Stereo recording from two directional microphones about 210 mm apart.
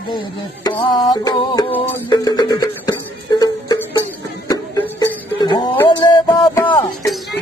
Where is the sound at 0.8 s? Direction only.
20° left (ahead or behind).